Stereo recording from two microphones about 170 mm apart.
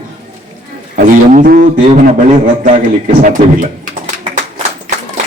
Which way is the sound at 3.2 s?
50° right (ahead or behind).